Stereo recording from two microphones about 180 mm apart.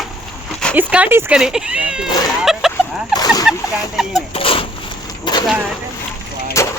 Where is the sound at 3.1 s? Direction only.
20° left (ahead or behind).